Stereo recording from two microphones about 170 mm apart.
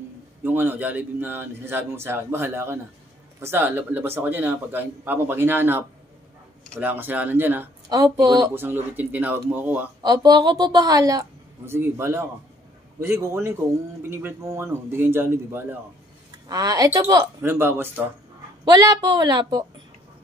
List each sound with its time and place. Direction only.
0.4 s a man's voice: 10° right (ahead or behind)
8.0 s a woman's voice: 25° right (ahead or behind)
8.5 s a man's voice: 10° right (ahead or behind)
10.0 s a woman's voice: 25° right (ahead or behind)
18.7 s a woman's voice: 25° right (ahead or behind)